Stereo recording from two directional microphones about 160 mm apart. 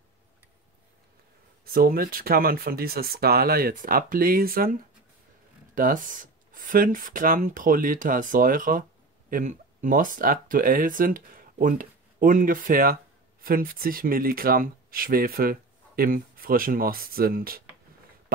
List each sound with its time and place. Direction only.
1.6 s speech: 65° right (ahead or behind)
5.8 s speech: 55° right (ahead or behind)